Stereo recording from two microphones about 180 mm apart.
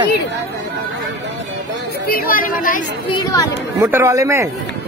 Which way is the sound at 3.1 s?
20° left (ahead or behind).